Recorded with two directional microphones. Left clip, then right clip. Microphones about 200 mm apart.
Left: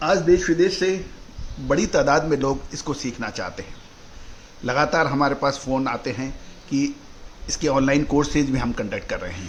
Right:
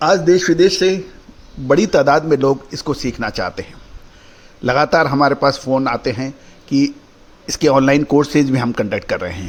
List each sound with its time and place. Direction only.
0.0 s speech: 50° right (ahead or behind)
1.6 s a man's voice: 40° right (ahead or behind)